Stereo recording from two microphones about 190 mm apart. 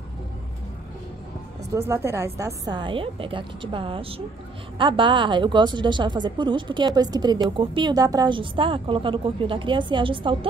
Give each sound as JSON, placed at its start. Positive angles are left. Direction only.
{"t": 1.7, "sound": "a woman's voice", "side_deg": -15}